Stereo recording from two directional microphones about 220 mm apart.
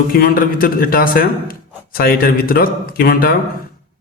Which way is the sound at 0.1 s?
40° left (ahead or behind).